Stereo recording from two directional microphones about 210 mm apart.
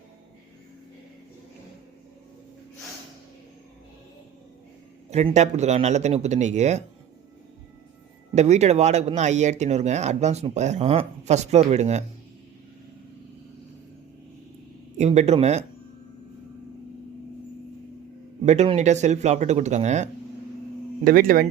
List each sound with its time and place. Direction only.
5.1 s speech: 30° right (ahead or behind)
8.4 s speech: 35° right (ahead or behind)
14.9 s speech: 30° right (ahead or behind)
18.4 s speech: 30° right (ahead or behind)
21.0 s speech: 45° right (ahead or behind)